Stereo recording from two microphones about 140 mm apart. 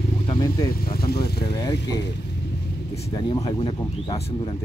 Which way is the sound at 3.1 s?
30° left (ahead or behind).